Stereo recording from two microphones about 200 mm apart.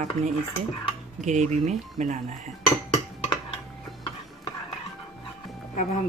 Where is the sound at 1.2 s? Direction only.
35° right (ahead or behind).